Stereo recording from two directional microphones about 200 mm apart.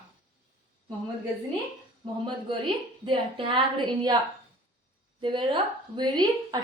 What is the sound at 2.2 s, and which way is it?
A woman's voice, 25° right (ahead or behind).